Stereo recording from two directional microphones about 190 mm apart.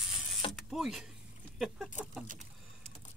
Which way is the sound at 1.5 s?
5° right (ahead or behind).